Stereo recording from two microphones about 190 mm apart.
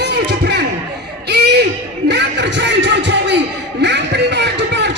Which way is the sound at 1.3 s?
60° right (ahead or behind).